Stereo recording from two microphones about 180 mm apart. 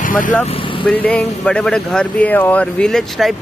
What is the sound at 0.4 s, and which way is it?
Speech, 10° left (ahead or behind).